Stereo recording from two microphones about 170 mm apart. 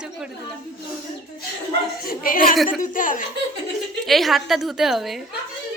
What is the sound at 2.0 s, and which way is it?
A woman's voice, 55° left (ahead or behind).